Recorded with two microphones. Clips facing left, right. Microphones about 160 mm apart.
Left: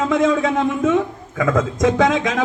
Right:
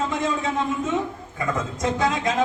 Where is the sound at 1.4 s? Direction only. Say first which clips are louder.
Left 9 dB; 90° left.